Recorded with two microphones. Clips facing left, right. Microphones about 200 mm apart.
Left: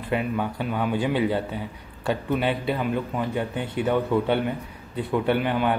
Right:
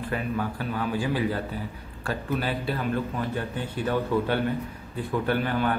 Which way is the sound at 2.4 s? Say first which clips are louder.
Left 4 dB; 20° left (ahead or behind).